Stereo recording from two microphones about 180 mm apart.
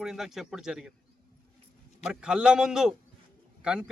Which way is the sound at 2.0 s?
5° right (ahead or behind).